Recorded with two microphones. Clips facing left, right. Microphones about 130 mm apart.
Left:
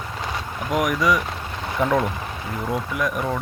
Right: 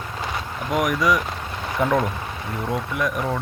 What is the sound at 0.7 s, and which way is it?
Speech, centre (ahead or behind).